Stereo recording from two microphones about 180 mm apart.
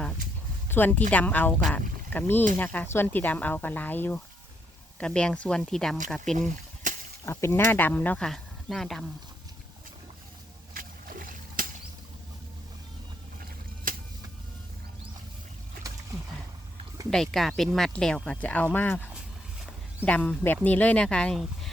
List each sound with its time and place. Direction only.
0.7 s speech: 10° left (ahead or behind)
7.3 s speech: 15° left (ahead or behind)
10.8 s a sound: 50° right (ahead or behind)
13.9 s a sound: 50° right (ahead or behind)
17.1 s speech: centre (ahead or behind)
20.1 s speech: 5° left (ahead or behind)